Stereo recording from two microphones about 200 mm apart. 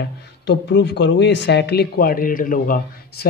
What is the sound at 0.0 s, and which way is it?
Speech, 60° left (ahead or behind).